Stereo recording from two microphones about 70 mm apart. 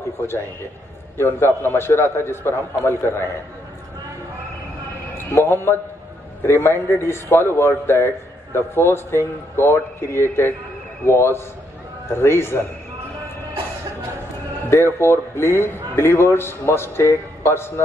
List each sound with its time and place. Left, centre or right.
1.1 s a man's voice: left
5.3 s a man's voice: left
14.7 s a man's voice: left